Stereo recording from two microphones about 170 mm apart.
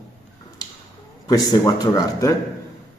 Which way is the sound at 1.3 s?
20° left (ahead or behind).